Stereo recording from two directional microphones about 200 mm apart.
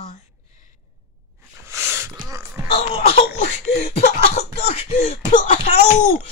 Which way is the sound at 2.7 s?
30° left (ahead or behind).